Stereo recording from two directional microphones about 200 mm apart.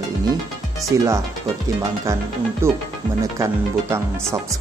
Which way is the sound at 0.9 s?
15° right (ahead or behind).